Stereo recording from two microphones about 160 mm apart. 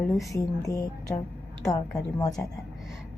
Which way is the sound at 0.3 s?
20° left (ahead or behind).